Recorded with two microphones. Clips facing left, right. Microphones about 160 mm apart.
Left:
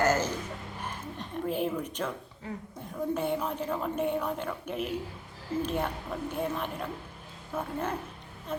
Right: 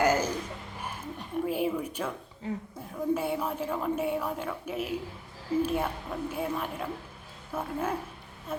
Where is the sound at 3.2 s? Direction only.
5° right (ahead or behind).